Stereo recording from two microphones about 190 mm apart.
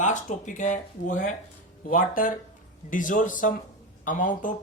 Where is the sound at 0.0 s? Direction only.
40° left (ahead or behind).